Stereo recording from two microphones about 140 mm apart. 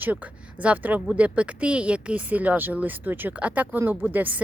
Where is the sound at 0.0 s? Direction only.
10° right (ahead or behind).